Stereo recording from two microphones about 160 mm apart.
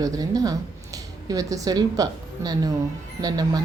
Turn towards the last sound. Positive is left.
turn(degrees=-25)  # may be behind; listen again after turning